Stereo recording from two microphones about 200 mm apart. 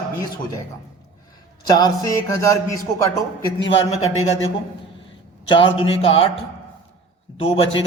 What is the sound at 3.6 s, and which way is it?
Speech, 80° left.